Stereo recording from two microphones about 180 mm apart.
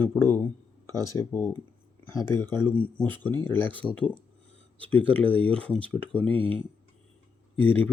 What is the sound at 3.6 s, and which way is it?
Speech, 30° right (ahead or behind).